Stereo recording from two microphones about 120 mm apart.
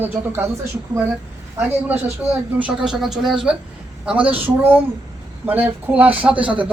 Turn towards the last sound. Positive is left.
turn(degrees=-10)  # may be behind; listen again after turning